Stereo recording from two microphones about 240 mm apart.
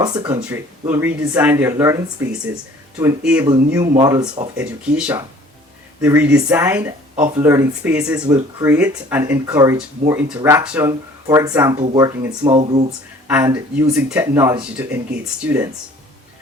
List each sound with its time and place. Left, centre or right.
0.0 s speech: centre